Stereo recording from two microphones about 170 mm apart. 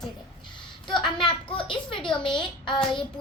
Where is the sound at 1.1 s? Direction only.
30° left (ahead or behind).